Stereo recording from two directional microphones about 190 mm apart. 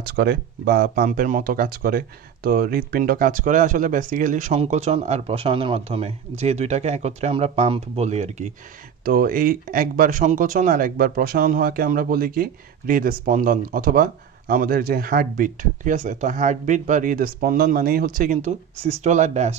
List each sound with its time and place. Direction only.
0.0 s speech: 55° right (ahead or behind); by 8.5 s 35° right (ahead or behind)
9.0 s speech: 50° right (ahead or behind)